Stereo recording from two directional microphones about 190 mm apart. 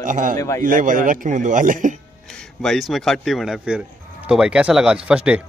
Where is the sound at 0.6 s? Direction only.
45° right (ahead or behind).